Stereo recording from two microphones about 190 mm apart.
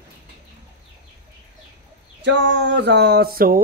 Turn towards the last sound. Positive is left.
turn(degrees=-50)  # may be behind; listen again after turning